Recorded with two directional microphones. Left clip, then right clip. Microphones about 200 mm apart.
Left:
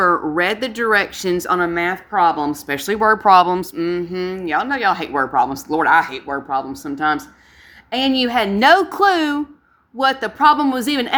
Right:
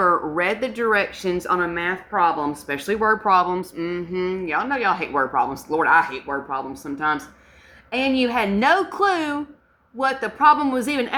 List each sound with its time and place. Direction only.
0.0 s speech: 45° left (ahead or behind)